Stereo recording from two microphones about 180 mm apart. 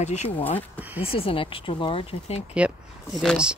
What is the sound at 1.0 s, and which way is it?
Speech, 30° left (ahead or behind).